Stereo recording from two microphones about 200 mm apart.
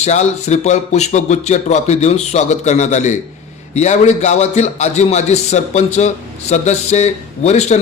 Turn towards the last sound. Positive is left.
turn(degrees=35)  # may be behind; listen again after turning